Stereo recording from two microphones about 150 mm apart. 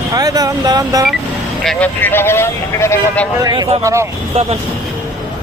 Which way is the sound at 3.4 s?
25° right (ahead or behind).